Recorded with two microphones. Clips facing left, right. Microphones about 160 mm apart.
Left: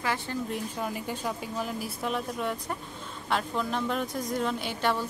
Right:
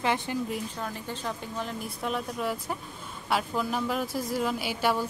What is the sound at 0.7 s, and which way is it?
A woman's voice, 10° left (ahead or behind).